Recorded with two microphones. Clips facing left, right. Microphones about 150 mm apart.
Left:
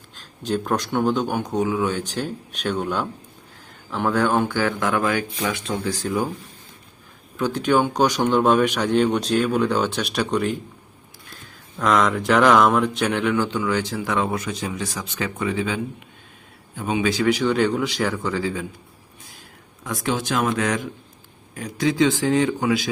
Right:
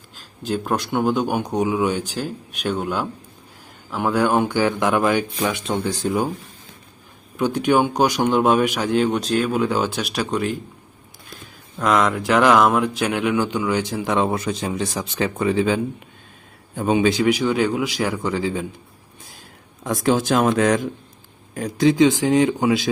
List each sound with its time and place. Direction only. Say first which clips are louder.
0.2 s a man's voice: even; 5° right (ahead or behind); by 6.2 s 20° right (ahead or behind)
7.3 s a man's voice: right 2 dB; 15° right (ahead or behind)
11.8 s speech: right 1 dB; 5° right (ahead or behind); by 17.1 s 40° right (ahead or behind)
17.1 s speech: right 1 dB; 15° right (ahead or behind)
19.8 s speech: right 6 dB; 35° right (ahead or behind)
21.9 s speech: even; 20° right (ahead or behind)